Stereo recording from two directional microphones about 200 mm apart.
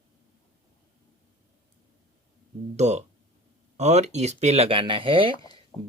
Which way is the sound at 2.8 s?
35° right (ahead or behind).